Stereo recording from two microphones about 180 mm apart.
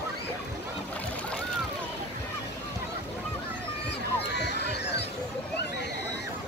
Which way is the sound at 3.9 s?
70° left (ahead or behind).